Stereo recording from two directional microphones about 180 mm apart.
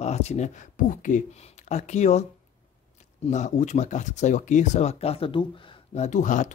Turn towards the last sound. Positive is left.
turn(degrees=45)  # may be behind; listen again after turning